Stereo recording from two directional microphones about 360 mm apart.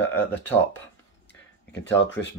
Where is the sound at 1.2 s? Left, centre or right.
Left.